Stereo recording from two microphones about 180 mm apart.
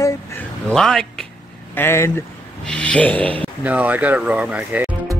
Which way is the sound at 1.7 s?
15° left (ahead or behind).